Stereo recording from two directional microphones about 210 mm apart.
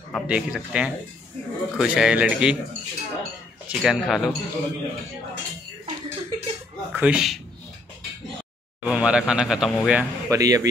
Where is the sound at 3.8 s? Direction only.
Centre (ahead or behind).